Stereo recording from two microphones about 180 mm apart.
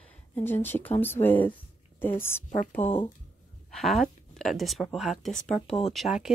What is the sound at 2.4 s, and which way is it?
Speech, 45° left (ahead or behind).